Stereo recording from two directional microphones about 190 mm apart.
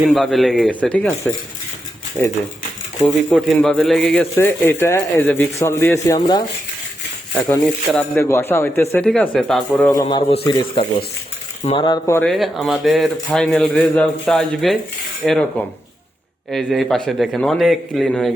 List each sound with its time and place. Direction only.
0.0 s speech: centre (ahead or behind); by 6.4 s 20° left (ahead or behind)
7.3 s speech: 5° left (ahead or behind)
9.9 s a man's voice: 25° left (ahead or behind)
12.2 s speech: centre (ahead or behind)